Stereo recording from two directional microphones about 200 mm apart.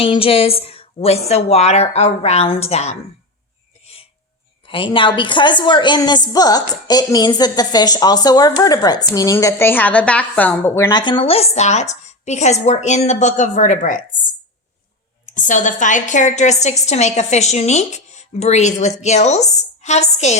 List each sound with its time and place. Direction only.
0.0 s a woman's voice: 30° left (ahead or behind)
4.6 s a woman's voice: 25° left (ahead or behind)
15.3 s a woman's voice: 40° left (ahead or behind)